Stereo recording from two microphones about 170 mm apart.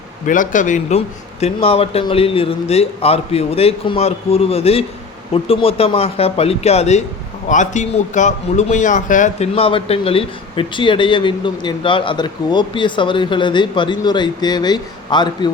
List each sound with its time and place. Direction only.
0.3 s a man's voice: 50° left (ahead or behind)
9.6 s a man's voice: 35° left (ahead or behind)